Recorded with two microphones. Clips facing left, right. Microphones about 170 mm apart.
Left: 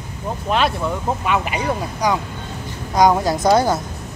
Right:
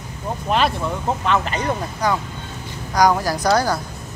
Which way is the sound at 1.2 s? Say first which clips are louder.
Even; 10° left (ahead or behind).